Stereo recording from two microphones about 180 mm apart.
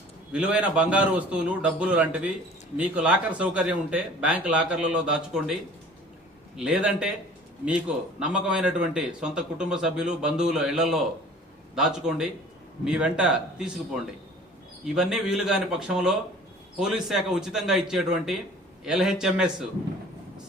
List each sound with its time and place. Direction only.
0.3 s a man's voice: 5° right (ahead or behind)
6.6 s a man's voice: 5° right (ahead or behind)